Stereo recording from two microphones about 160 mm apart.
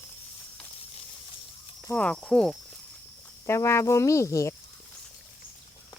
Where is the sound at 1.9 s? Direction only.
5° left (ahead or behind).